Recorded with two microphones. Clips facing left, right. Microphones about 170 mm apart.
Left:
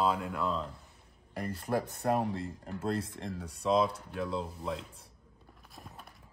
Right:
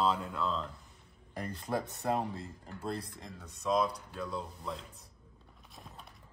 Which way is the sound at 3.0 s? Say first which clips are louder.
Left 8 dB; 30° left (ahead or behind).